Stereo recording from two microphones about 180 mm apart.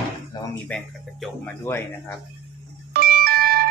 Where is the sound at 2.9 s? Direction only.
55° right (ahead or behind).